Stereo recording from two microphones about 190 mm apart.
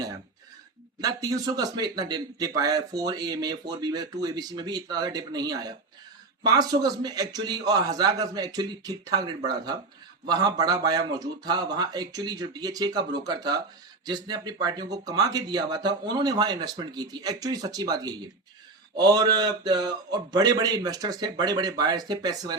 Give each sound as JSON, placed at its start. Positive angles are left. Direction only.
{"t": 1.0, "sound": "a man's voice", "side_deg": -20}